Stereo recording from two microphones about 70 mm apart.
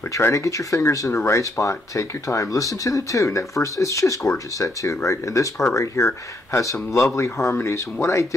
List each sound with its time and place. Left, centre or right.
0.2 s speech: left